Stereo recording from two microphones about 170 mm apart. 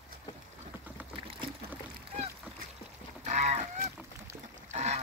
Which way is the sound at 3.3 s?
45° right (ahead or behind).